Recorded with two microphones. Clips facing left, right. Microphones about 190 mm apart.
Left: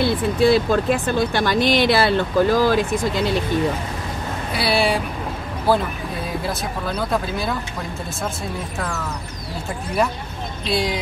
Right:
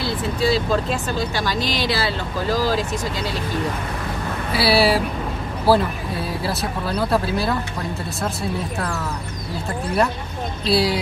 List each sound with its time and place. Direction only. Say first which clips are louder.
0.0 s speech: left 5 dB; 55° left (ahead or behind)
4.5 s speech: right 3 dB; 5° right (ahead or behind)
10.7 s speech: right 3 dB; 5° right (ahead or behind)